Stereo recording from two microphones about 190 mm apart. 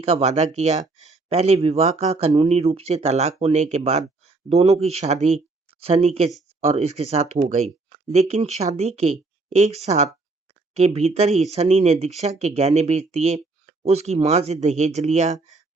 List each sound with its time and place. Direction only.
0.0 s speech: 35° right (ahead or behind)